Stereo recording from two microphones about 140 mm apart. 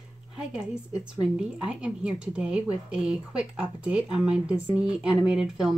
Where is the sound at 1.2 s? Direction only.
5° right (ahead or behind).